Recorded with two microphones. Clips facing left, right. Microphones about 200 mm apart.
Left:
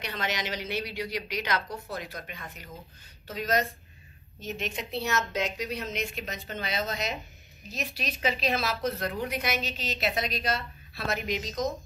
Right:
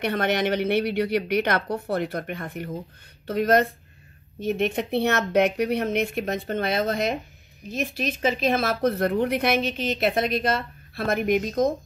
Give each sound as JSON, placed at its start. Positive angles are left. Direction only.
{"t": 0.0, "sound": "speech", "side_deg": -55}